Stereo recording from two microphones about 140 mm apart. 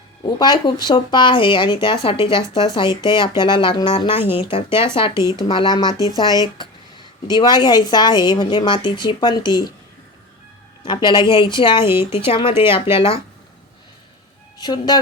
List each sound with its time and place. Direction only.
0.3 s a woman's voice: 30° left (ahead or behind)
7.3 s a woman's voice: 30° left (ahead or behind)
10.8 s a woman's voice: 30° left (ahead or behind)
11.9 s speech: 15° right (ahead or behind)
12.2 s a woman's voice: 40° left (ahead or behind)
14.6 s speech: 30° left (ahead or behind)